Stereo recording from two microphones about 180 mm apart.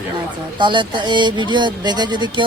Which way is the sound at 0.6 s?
25° right (ahead or behind).